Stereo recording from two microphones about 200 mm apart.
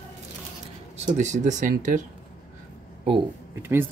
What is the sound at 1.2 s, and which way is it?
Speech, 35° right (ahead or behind).